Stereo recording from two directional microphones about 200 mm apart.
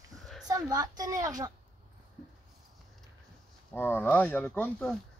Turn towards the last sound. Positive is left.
turn(degrees=10)  # may be behind; listen again after turning